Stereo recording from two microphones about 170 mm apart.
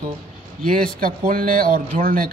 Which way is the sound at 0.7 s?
55° right (ahead or behind).